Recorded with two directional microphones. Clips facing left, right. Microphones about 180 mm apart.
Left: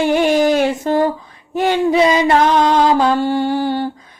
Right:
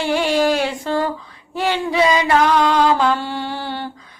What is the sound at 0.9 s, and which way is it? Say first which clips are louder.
Mantra: left 4 dB; 50° left (ahead or behind).